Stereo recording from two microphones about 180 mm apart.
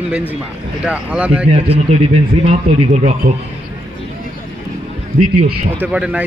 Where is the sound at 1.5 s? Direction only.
35° right (ahead or behind).